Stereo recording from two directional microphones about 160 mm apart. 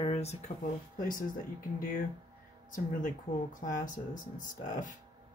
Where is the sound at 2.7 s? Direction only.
55° left (ahead or behind).